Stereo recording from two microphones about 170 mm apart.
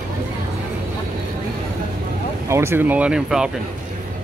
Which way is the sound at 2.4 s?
15° right (ahead or behind).